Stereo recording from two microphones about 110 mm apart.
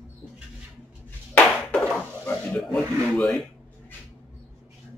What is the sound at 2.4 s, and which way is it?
Speech, 5° left (ahead or behind).